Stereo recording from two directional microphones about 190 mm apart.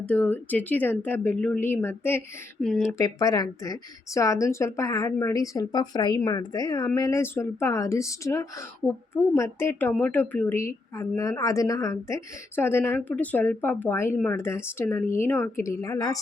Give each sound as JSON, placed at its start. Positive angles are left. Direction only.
{"t": 0.0, "sound": "a woman's voice", "side_deg": 10}
{"t": 3.0, "sound": "a woman's voice", "side_deg": 20}